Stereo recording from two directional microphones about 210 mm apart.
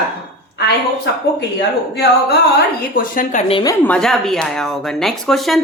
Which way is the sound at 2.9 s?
40° left (ahead or behind).